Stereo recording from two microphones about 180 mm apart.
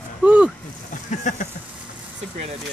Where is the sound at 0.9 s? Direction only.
45° left (ahead or behind).